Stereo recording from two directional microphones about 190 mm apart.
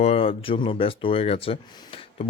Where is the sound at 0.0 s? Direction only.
30° left (ahead or behind).